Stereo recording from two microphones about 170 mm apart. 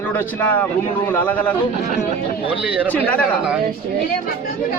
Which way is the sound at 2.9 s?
10° left (ahead or behind).